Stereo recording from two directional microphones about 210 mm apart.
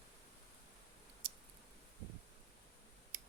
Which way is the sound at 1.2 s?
45° right (ahead or behind).